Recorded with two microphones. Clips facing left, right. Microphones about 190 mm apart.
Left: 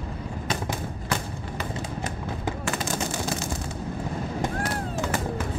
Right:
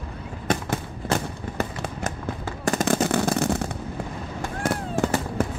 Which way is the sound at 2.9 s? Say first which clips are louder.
Right 7 dB; 60° right (ahead or behind).